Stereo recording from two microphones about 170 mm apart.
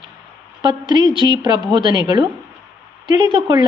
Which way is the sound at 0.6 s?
25° right (ahead or behind).